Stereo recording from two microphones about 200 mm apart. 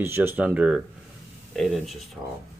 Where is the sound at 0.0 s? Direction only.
10° right (ahead or behind).